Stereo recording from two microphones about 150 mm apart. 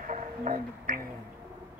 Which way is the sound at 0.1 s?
60° right (ahead or behind).